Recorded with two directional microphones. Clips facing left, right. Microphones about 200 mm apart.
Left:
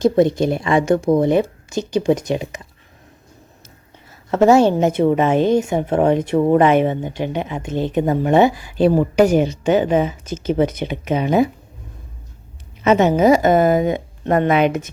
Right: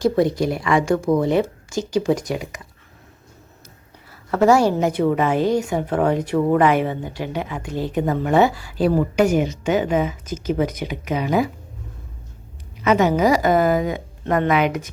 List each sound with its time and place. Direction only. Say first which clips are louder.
0.0 s a woman's voice: left 3 dB; 25° left (ahead or behind)
4.3 s a woman's voice: left 3 dB; 25° left (ahead or behind)
12.8 s a woman's voice: left 3 dB; 25° left (ahead or behind)